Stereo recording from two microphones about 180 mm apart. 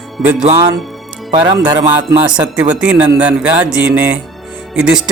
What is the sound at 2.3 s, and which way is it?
Speech, 5° right (ahead or behind).